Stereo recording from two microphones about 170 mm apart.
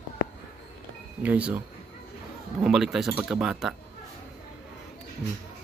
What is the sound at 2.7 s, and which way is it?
Speech, centre (ahead or behind).